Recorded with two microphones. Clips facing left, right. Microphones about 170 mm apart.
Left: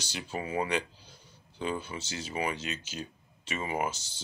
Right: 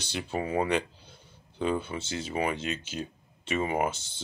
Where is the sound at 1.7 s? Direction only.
55° right (ahead or behind).